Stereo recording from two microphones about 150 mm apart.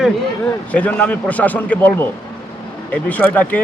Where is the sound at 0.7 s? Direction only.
10° left (ahead or behind).